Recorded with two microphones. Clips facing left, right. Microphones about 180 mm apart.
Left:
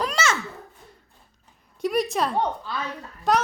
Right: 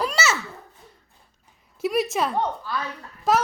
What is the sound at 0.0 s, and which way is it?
Babbling, 5° right (ahead or behind).